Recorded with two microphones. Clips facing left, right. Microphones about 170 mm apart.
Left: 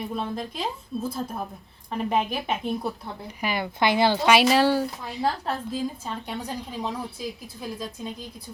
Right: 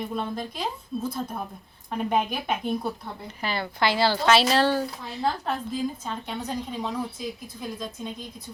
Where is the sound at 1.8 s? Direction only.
Centre (ahead or behind).